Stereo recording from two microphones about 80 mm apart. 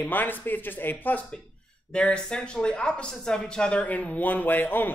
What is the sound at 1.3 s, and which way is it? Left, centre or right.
Speech, centre.